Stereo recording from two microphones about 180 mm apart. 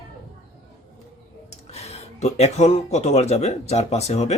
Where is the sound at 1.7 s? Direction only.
35° left (ahead or behind).